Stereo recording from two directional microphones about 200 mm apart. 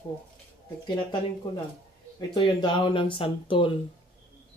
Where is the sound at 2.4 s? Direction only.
25° left (ahead or behind).